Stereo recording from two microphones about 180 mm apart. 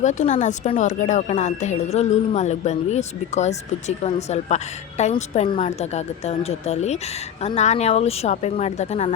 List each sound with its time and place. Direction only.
0.0 s speech: 40° left (ahead or behind)